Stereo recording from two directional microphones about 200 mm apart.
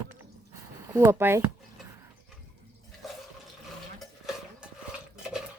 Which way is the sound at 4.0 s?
Centre (ahead or behind).